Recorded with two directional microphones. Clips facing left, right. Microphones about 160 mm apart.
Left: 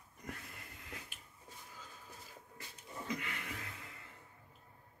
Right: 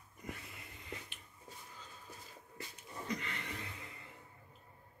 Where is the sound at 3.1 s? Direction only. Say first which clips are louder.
Right 1 dB; 10° left (ahead or behind).